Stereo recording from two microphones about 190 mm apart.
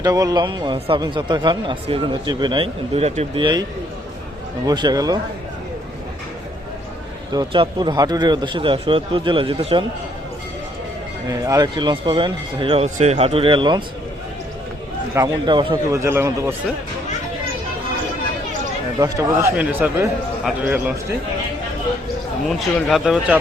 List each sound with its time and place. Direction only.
0.0 s speech: 20° right (ahead or behind)
7.3 s speech: 25° right (ahead or behind)
11.3 s speech: 20° right (ahead or behind)
15.1 s speech: 20° right (ahead or behind)
18.9 s speech: 20° right (ahead or behind)
22.4 s speech: centre (ahead or behind)